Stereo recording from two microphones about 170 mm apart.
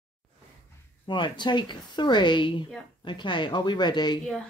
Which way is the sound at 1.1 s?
30° left (ahead or behind).